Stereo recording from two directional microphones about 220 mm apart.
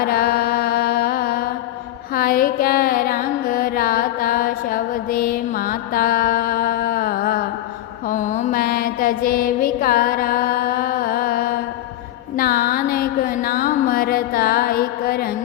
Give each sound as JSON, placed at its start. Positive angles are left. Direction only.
{"t": 0.0, "sound": "mantra", "side_deg": 45}
{"t": 2.1, "sound": "music", "side_deg": 40}
{"t": 8.1, "sound": "mantra", "side_deg": 35}
{"t": 12.4, "sound": "music", "side_deg": 40}